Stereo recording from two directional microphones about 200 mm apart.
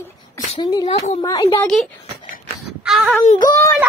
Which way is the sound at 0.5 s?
20° left (ahead or behind).